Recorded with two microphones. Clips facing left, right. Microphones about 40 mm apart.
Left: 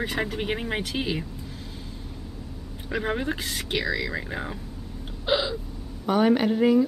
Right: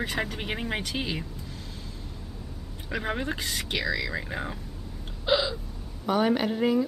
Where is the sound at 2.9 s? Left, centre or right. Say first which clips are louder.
Left 3 dB; centre.